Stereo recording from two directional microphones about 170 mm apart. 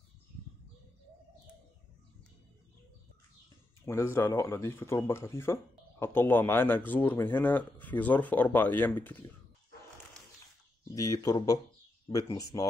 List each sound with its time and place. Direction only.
3.8 s speech: 15° left (ahead or behind)
11.0 s speech: 20° left (ahead or behind)